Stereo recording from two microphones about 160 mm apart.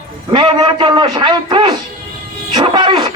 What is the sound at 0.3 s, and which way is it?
A man's voice, 30° right (ahead or behind).